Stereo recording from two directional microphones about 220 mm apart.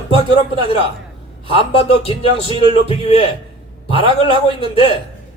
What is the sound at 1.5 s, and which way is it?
Speech, 25° left (ahead or behind).